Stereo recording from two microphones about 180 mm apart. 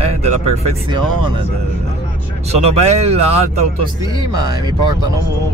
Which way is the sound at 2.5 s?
35° right (ahead or behind).